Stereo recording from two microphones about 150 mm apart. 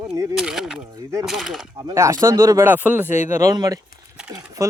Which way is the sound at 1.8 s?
20° right (ahead or behind).